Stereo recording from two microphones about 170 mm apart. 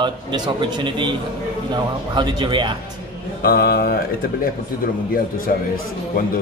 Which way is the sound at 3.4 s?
65° left (ahead or behind).